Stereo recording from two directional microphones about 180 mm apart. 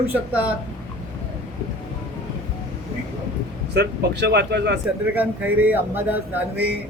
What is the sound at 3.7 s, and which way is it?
Speech, 65° right (ahead or behind).